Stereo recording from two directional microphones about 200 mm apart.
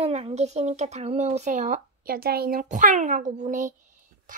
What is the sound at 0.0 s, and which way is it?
Speech, 30° right (ahead or behind).